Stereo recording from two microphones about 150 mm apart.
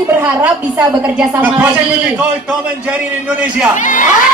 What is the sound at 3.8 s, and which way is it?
Speech, 60° left (ahead or behind).